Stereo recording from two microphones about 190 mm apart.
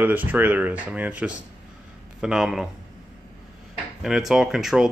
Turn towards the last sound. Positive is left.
turn(degrees=0)  # may be behind; listen again after turning